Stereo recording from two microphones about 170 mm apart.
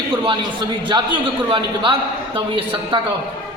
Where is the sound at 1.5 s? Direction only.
30° right (ahead or behind).